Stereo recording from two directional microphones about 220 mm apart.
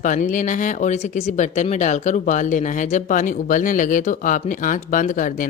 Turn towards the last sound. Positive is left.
turn(degrees=35)  # may be behind; listen again after turning